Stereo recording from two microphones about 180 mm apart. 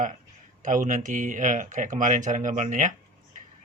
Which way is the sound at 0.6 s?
45° right (ahead or behind).